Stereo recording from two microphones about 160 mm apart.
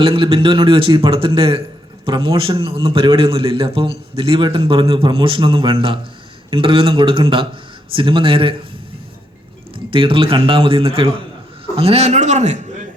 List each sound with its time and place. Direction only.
0.0 s a man's voice: 35° right (ahead or behind)
9.7 s a man's voice: 35° right (ahead or behind)